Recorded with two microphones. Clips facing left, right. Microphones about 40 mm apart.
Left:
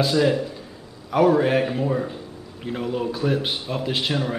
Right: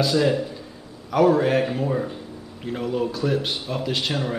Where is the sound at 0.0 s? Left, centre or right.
Centre.